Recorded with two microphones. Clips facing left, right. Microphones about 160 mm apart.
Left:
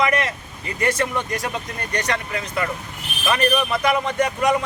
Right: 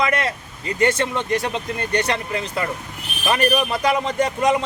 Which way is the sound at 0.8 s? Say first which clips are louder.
Right 2 dB; 25° right (ahead or behind).